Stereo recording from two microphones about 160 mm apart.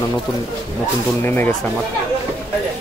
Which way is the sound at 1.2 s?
15° left (ahead or behind).